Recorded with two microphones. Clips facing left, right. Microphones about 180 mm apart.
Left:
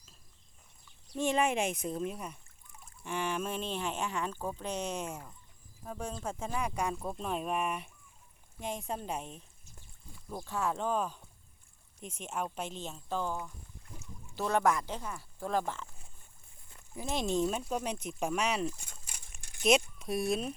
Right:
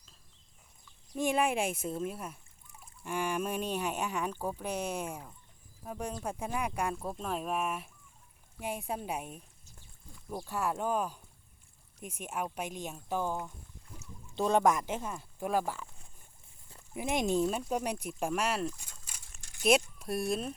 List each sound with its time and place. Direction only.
1.1 s speech: 10° right (ahead or behind)
14.3 s speech: 20° right (ahead or behind)
16.9 s speech: 15° right (ahead or behind); by 20.5 s centre (ahead or behind)